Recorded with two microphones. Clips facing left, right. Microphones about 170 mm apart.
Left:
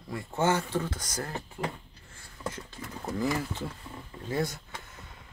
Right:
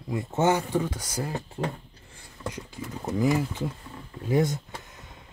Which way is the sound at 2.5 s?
10° right (ahead or behind).